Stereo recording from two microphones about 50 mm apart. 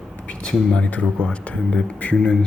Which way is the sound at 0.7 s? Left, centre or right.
Left.